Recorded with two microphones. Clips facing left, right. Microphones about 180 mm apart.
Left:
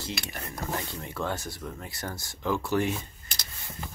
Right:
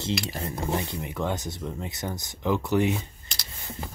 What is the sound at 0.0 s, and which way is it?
Speech, 25° right (ahead or behind).